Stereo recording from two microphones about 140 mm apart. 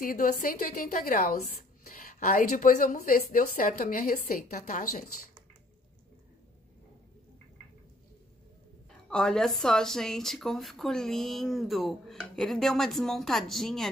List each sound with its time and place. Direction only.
0.0 s a woman's voice: 85° left
9.1 s speech: 5° left (ahead or behind)